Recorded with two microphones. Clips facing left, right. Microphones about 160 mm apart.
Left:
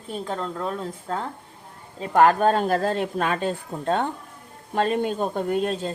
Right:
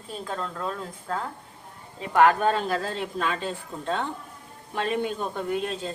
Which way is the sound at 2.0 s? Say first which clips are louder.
Left 2 dB; 40° left (ahead or behind).